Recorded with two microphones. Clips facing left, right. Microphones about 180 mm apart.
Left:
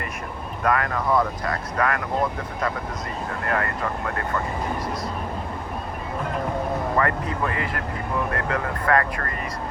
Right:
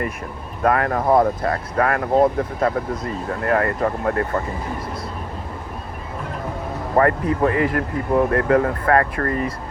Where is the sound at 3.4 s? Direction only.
40° right (ahead or behind).